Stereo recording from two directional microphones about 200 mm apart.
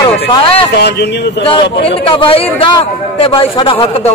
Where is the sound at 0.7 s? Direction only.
55° left (ahead or behind).